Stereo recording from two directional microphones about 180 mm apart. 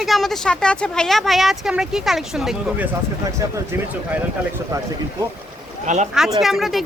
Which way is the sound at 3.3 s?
15° right (ahead or behind).